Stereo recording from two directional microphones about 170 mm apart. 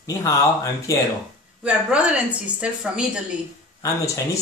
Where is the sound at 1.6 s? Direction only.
5° right (ahead or behind).